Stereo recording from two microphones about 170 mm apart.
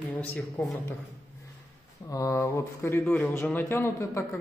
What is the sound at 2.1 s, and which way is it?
Speech, 20° left (ahead or behind).